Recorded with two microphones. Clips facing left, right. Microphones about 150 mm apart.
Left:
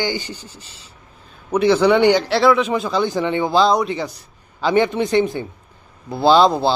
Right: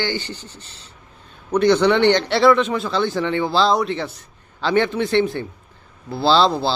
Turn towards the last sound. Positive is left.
turn(degrees=15)  # may be behind; listen again after turning